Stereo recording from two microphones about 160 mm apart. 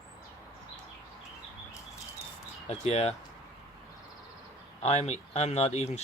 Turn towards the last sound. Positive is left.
turn(degrees=45)  # may be behind; listen again after turning